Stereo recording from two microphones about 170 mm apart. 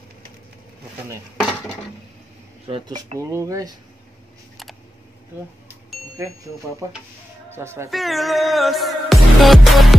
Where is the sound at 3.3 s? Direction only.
20° right (ahead or behind).